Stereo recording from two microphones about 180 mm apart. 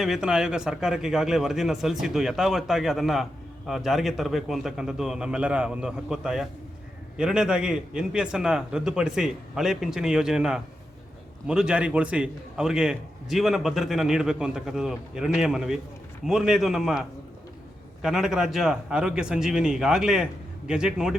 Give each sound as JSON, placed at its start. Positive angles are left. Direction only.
{"t": 0.0, "sound": "a man's voice", "side_deg": -5}